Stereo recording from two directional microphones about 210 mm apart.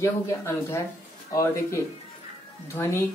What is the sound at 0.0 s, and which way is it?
Speech, 10° left (ahead or behind).